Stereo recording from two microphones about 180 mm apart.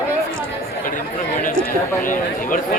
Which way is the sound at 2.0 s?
50° left (ahead or behind).